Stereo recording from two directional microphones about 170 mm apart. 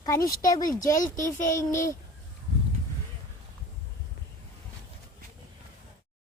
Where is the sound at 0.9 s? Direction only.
50° left (ahead or behind).